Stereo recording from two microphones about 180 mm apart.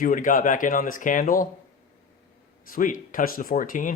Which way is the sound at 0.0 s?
50° left (ahead or behind).